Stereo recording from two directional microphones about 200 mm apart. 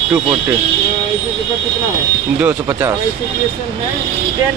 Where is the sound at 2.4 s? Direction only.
10° right (ahead or behind).